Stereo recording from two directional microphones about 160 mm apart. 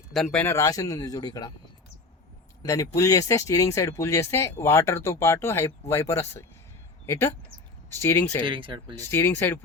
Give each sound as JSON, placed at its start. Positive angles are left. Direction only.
{"t": 0.1, "sound": "speech", "side_deg": 0}
{"t": 0.4, "sound": "speech", "side_deg": 20}
{"t": 2.6, "sound": "speech", "side_deg": 20}
{"t": 8.4, "sound": "speech", "side_deg": -30}
{"t": 9.0, "sound": "speech", "side_deg": 15}